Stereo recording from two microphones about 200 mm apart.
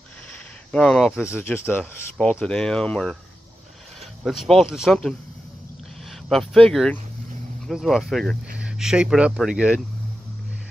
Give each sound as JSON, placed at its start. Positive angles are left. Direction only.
{"t": 0.3, "sound": "speech", "side_deg": 5}
{"t": 4.2, "sound": "speech", "side_deg": 0}
{"t": 6.2, "sound": "speech", "side_deg": 0}